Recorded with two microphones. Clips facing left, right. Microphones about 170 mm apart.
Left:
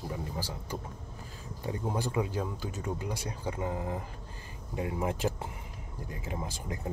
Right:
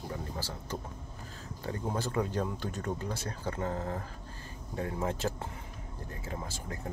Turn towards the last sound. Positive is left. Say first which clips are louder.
# left 2 dB
turn(degrees=15)  # may be behind; listen again after turning